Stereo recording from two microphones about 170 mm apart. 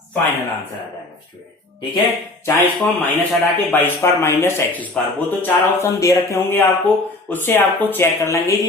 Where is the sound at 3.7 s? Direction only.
10° left (ahead or behind).